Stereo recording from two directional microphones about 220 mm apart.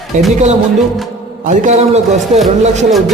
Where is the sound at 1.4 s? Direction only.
30° right (ahead or behind).